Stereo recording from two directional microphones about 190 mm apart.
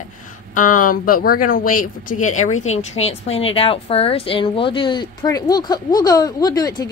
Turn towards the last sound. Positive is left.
turn(degrees=20)  # may be behind; listen again after turning